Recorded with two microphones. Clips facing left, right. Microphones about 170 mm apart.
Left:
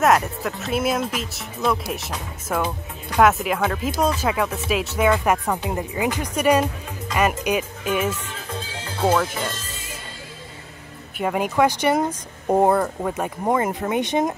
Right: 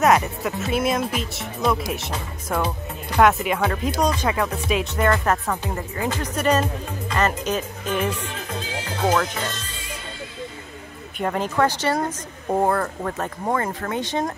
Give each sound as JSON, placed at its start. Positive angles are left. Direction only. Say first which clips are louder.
{"t": 0.0, "sound": "speech", "louder": "even", "side_deg": 0}
{"t": 11.1, "sound": "speech", "louder": "left 2 dB", "side_deg": 10}